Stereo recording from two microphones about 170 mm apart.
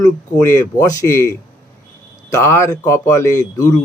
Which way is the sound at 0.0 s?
20° left (ahead or behind).